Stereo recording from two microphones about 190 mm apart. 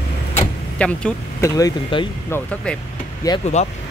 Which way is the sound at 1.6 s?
25° left (ahead or behind).